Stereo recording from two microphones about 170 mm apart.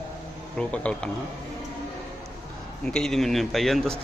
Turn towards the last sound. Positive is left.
turn(degrees=0)  # may be behind; listen again after turning